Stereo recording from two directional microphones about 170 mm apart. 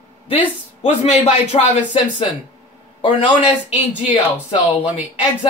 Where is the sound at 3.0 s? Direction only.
30° left (ahead or behind).